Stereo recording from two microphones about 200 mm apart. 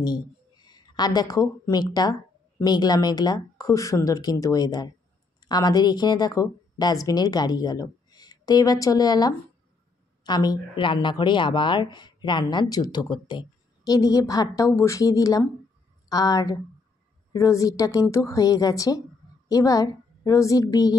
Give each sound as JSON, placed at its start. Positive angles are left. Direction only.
{"t": 0.0, "sound": "a woman's voice", "side_deg": 20}